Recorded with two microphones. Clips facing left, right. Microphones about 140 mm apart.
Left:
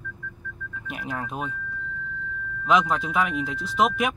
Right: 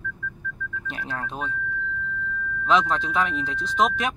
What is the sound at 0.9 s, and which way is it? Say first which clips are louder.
Speech: left 2 dB; 10° left (ahead or behind).